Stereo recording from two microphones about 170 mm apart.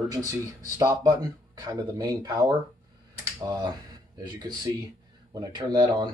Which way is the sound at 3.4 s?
25° right (ahead or behind).